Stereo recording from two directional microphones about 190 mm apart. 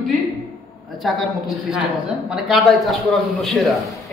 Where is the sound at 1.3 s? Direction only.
Centre (ahead or behind).